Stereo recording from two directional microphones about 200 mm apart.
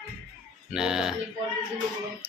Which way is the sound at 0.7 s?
5° right (ahead or behind).